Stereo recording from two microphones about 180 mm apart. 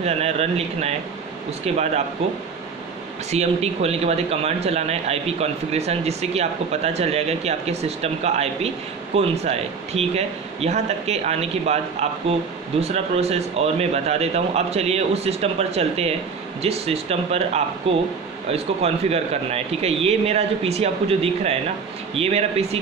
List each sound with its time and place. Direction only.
0.0 s a man's voice: 35° right (ahead or behind)
3.3 s a man's voice: 35° right (ahead or behind)